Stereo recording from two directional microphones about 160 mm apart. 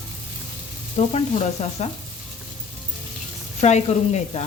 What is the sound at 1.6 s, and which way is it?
Sizzle, 45° left (ahead or behind).